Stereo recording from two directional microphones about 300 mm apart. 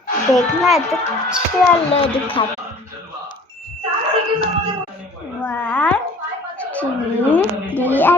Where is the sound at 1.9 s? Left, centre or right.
Centre.